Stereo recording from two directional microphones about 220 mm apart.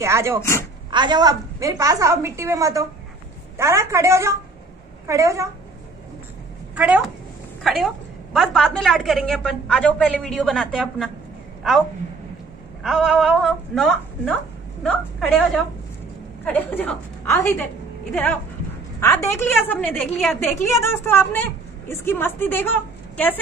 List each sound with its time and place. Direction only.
0.0 s a woman's voice: 10° right (ahead or behind)
0.4 s a woman's voice: 10° left (ahead or behind)
0.8 s a woman's voice: 20° right (ahead or behind)
6.7 s a sound: 5° right (ahead or behind)
7.6 s a woman's voice: centre (ahead or behind)
12.8 s a woman's voice: centre (ahead or behind)